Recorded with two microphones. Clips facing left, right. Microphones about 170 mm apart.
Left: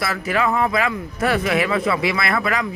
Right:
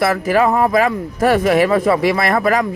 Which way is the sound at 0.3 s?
40° right (ahead or behind).